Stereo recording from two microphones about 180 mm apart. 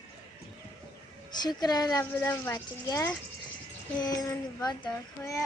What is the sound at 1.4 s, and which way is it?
Speech, 20° left (ahead or behind).